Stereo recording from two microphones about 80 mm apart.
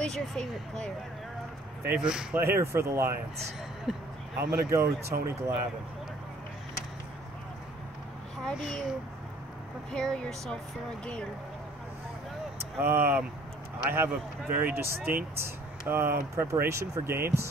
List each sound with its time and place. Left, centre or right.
0.0 s speech: centre
2.0 s speech: centre
2.3 s speech: right
3.9 s speech: centre
4.5 s speech: right
8.5 s a child's voice: centre
9.8 s speech: centre
12.7 s speech: right